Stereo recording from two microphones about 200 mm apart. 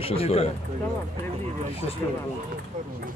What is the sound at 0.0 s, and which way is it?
Speech, 30° left (ahead or behind).